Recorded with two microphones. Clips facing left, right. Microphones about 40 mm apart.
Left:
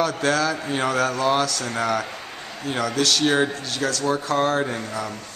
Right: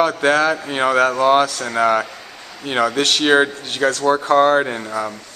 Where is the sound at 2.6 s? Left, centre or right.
Right.